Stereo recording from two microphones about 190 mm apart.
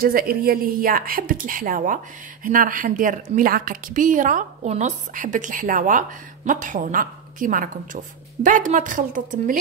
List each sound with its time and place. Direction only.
0.0 s a woman's voice: 50° right (ahead or behind)